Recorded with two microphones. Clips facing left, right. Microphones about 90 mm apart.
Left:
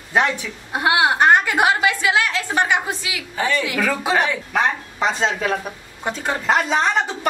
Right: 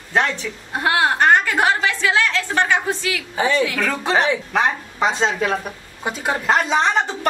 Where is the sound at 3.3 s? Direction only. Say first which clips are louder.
Right 2 dB; 15° right (ahead or behind).